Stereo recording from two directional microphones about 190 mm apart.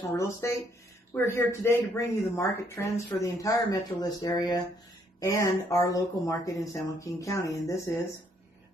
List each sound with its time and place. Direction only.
0.2 s speech: 15° left (ahead or behind)